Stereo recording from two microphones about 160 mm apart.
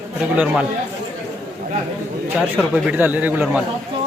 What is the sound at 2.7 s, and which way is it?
Speech, 10° right (ahead or behind).